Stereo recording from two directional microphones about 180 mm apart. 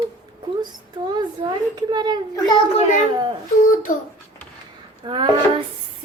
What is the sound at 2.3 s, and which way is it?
Speech, 25° left (ahead or behind).